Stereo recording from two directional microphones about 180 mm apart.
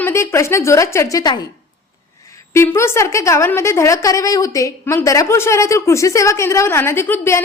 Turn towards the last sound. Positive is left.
turn(degrees=15)  # may be behind; listen again after turning